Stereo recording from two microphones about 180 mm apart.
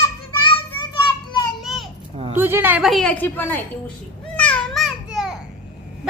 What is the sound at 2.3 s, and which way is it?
A woman's voice, 10° right (ahead or behind).